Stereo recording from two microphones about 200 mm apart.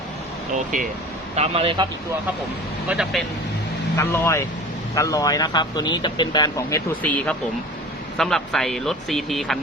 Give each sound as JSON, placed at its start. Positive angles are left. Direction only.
{"t": 1.4, "sound": "a man's voice", "side_deg": -30}
{"t": 2.9, "sound": "speech", "side_deg": 0}
{"t": 3.9, "sound": "speech", "side_deg": 10}